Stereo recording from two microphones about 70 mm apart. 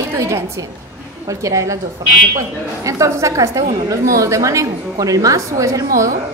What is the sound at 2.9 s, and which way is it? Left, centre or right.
A woman's voice, right.